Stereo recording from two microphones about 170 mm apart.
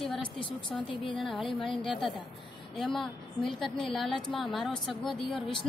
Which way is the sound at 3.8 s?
Centre (ahead or behind).